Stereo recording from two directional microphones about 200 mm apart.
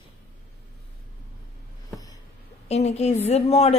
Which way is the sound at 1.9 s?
20° left (ahead or behind).